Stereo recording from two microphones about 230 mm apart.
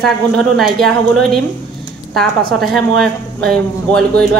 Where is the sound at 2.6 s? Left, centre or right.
Centre.